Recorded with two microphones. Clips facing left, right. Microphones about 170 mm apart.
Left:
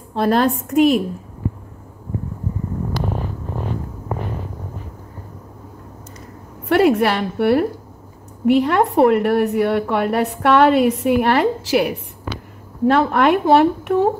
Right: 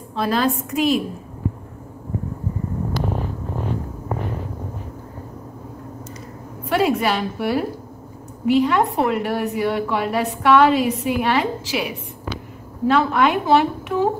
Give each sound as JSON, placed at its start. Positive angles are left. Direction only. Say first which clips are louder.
{"t": 0.2, "sound": "a woman's voice", "louder": "left 4 dB", "side_deg": 55}
{"t": 6.7, "sound": "a woman's voice", "louder": "left 4 dB", "side_deg": 65}